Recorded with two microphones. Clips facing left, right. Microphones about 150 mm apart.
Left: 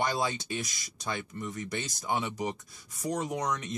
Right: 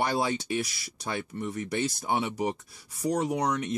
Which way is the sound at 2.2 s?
25° right (ahead or behind).